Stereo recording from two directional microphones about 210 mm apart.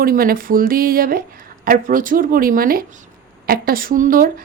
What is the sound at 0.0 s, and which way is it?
A woman's voice, 45° right (ahead or behind).